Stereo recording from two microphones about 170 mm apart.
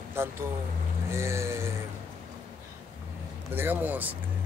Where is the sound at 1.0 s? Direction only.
15° right (ahead or behind).